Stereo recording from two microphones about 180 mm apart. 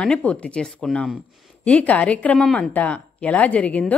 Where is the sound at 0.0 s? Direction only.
5° left (ahead or behind).